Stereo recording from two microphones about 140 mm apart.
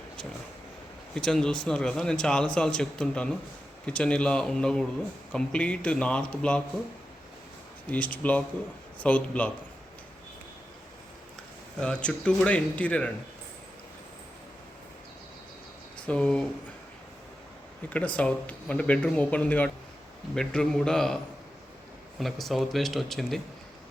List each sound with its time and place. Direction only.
1.1 s speech: 5° left (ahead or behind)
7.9 s speech: 10° left (ahead or behind)
11.8 s speech: 5° left (ahead or behind)
16.0 s speech: 5° left (ahead or behind)
17.8 s speech: 10° left (ahead or behind)
22.2 s speech: centre (ahead or behind)